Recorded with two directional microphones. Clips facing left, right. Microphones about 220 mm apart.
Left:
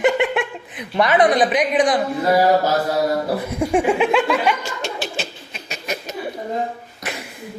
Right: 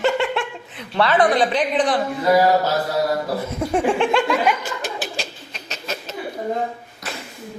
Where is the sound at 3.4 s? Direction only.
15° left (ahead or behind).